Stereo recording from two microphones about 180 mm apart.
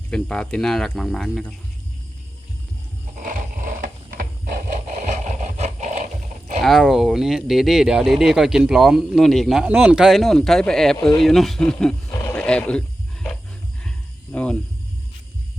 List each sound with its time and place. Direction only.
0.1 s speech: 5° left (ahead or behind)
3.2 s scrape: 50° right (ahead or behind)
6.6 s speech: centre (ahead or behind)
12.2 s roaring cats: 5° left (ahead or behind)
14.3 s speech: 5° left (ahead or behind)